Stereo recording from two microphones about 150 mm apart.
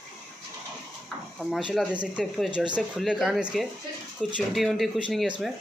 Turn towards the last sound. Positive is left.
turn(degrees=0)  # may be behind; listen again after turning